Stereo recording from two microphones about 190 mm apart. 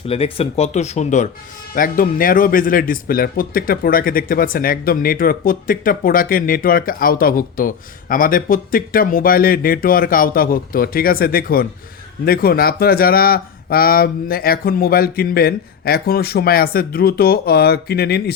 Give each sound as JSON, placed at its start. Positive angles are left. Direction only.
{"t": 0.1, "sound": "speech", "side_deg": 30}